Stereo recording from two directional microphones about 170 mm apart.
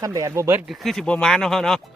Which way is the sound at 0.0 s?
20° right (ahead or behind).